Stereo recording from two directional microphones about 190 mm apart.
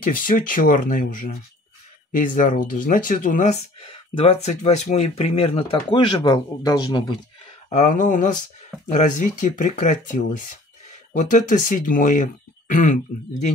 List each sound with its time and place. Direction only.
0.0 s speech: 45° left (ahead or behind); by 7.2 s 25° left (ahead or behind)
7.7 s speech: 40° left (ahead or behind)